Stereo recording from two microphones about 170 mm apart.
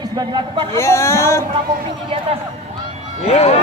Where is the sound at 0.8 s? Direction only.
15° left (ahead or behind).